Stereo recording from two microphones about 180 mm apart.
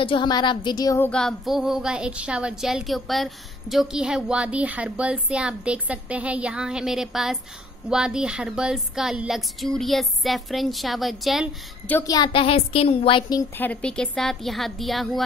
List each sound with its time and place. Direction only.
0.0 s speech: 25° left (ahead or behind); by 11.5 s centre (ahead or behind)
11.9 s a woman's voice: 20° left (ahead or behind)
13.6 s speech: 5° left (ahead or behind)